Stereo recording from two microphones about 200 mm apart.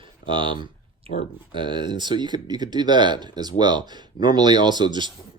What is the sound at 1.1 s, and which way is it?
Speech, 40° left (ahead or behind).